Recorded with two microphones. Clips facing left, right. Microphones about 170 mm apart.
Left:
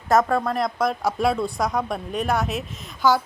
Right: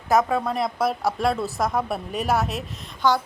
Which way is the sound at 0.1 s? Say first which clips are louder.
Left 1 dB; centre (ahead or behind).